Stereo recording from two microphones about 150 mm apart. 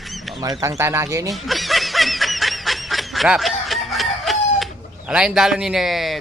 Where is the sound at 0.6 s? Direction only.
20° right (ahead or behind).